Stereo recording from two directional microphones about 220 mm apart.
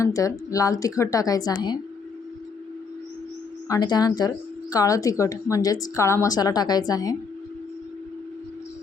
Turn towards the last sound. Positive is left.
turn(degrees=15)  # may be behind; listen again after turning